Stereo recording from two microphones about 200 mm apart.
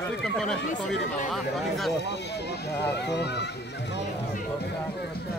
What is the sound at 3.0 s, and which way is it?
Speech, 55° left (ahead or behind).